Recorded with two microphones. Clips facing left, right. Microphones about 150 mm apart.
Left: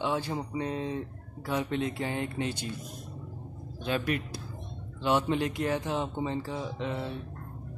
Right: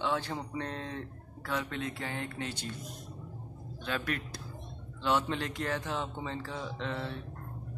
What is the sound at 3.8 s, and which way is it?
Speech, 15° left (ahead or behind).